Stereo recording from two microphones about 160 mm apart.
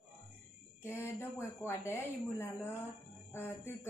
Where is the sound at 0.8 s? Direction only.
15° left (ahead or behind).